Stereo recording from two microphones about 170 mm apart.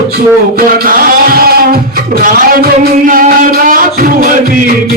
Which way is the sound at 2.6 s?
55° right (ahead or behind).